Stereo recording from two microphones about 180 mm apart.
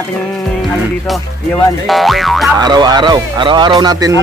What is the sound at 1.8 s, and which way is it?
Speech, centre (ahead or behind).